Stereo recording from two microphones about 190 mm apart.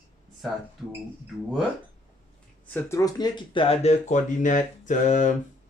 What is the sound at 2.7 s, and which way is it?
Speech, 15° left (ahead or behind).